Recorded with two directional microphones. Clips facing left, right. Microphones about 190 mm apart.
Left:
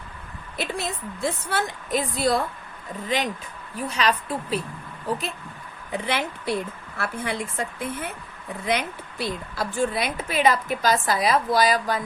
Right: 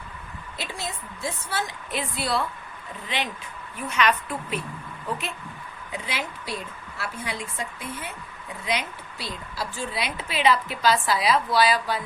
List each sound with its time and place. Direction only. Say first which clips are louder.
0.5 s a woman's voice: left 6 dB; 60° left (ahead or behind)
1.9 s a woman's voice: left 6 dB; 40° left (ahead or behind)
3.8 s a woman's voice: even; 35° left (ahead or behind)
5.9 s a woman's voice: left 6 dB; 55° left (ahead or behind)